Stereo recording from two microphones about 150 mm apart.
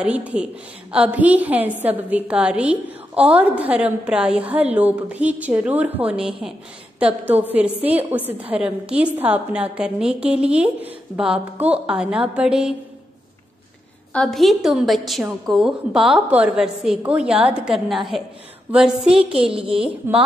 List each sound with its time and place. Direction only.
0.0 s a woman's voice: 10° right (ahead or behind)
14.1 s a woman's voice: 5° left (ahead or behind)
19.3 s a child's voice: 40° right (ahead or behind)
19.8 s a woman's voice: 5° right (ahead or behind)